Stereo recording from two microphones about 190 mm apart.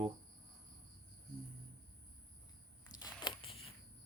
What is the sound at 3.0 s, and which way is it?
Biting, 25° left (ahead or behind).